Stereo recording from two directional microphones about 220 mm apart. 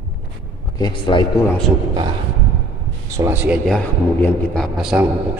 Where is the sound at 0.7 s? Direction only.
20° left (ahead or behind).